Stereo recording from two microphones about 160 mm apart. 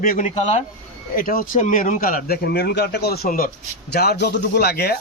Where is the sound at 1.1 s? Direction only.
60° left (ahead or behind).